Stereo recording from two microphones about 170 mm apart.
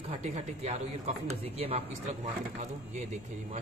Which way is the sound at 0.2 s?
40° right (ahead or behind).